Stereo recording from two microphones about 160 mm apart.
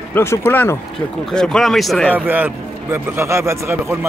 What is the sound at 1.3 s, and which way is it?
Speech, 5° left (ahead or behind).